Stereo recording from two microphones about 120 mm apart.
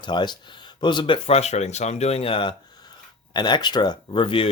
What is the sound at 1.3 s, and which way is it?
Speech, 65° left (ahead or behind).